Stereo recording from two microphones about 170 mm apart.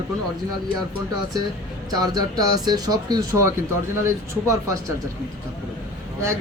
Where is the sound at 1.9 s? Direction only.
20° right (ahead or behind).